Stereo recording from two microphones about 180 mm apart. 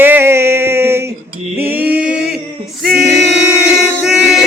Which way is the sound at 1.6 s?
10° right (ahead or behind).